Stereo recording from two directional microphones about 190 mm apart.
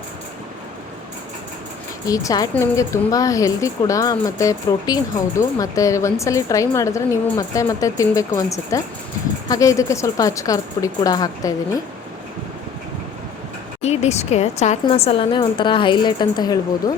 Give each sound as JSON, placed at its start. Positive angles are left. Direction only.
{"t": 2.0, "sound": "a woman's voice", "side_deg": 20}
{"t": 13.8, "sound": "speech", "side_deg": 35}